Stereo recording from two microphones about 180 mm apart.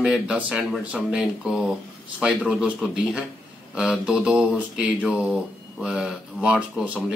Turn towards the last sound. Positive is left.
turn(degrees=-5)  # may be behind; listen again after turning